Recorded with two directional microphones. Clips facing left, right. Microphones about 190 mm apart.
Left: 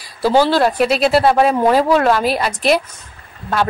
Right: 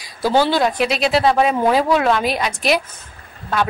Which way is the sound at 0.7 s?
40° left (ahead or behind).